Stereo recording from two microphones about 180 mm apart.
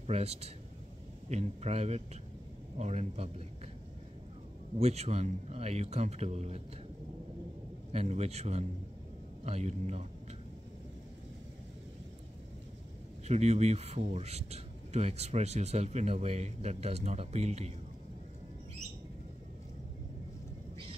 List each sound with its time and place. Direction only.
0.0 s speech: 35° right (ahead or behind)
4.7 s speech: 35° right (ahead or behind)
7.9 s speech: 40° right (ahead or behind)
13.3 s speech: 40° right (ahead or behind)